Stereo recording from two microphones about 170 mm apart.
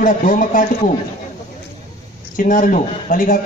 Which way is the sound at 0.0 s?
50° left (ahead or behind).